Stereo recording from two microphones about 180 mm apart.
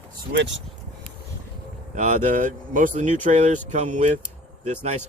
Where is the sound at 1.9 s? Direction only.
40° right (ahead or behind).